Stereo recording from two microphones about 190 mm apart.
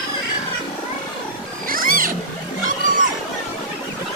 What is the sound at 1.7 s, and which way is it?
Wild animals, 45° right (ahead or behind).